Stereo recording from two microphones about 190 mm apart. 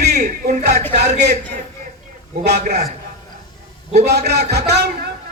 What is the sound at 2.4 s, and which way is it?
Music, 60° right (ahead or behind).